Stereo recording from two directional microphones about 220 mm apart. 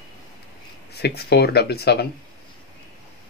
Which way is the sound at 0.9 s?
45° left (ahead or behind).